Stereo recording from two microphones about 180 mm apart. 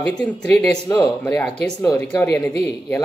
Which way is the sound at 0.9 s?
20° left (ahead or behind).